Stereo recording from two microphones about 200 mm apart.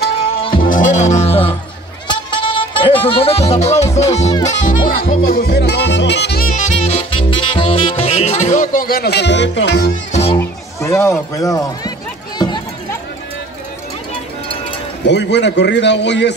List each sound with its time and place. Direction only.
0.4 s music: 25° left (ahead or behind)
0.7 s speech: 40° left (ahead or behind)
2.0 s music: 25° left (ahead or behind)
4.5 s speech: 40° left (ahead or behind)
10.3 s speech: 15° left (ahead or behind)
12.4 s run: 25° left (ahead or behind)
15.0 s a man's voice: 60° left (ahead or behind)